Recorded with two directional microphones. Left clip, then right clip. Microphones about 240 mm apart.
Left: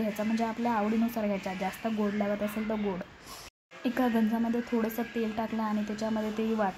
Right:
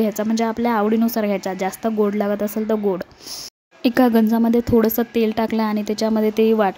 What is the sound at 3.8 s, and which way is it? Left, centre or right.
Speech, right.